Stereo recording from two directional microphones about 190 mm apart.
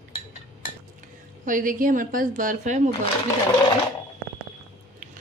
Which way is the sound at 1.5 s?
45° right (ahead or behind).